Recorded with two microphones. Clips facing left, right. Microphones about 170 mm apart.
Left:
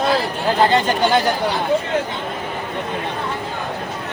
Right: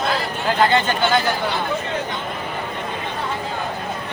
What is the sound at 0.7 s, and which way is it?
Speech, 35° left (ahead or behind).